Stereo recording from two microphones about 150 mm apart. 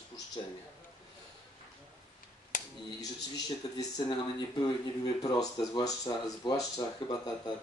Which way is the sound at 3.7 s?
25° left (ahead or behind).